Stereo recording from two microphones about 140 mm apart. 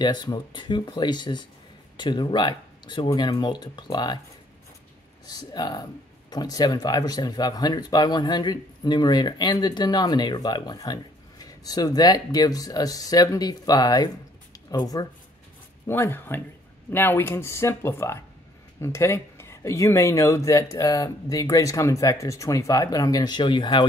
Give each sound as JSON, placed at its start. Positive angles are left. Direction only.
{"t": 0.0, "sound": "speech", "side_deg": 30}
{"t": 5.2, "sound": "speech", "side_deg": 30}
{"t": 15.9, "sound": "speech", "side_deg": 15}